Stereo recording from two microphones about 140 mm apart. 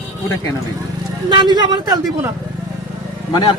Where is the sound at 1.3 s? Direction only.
30° right (ahead or behind).